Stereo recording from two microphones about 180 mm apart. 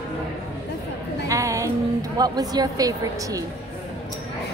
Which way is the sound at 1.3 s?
15° right (ahead or behind).